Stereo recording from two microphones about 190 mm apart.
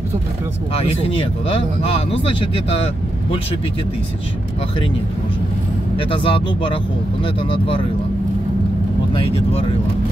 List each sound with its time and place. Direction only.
1.0 s speech: 30° left (ahead or behind)
5.9 s speech: 25° left (ahead or behind)
9.1 s speech: 30° left (ahead or behind)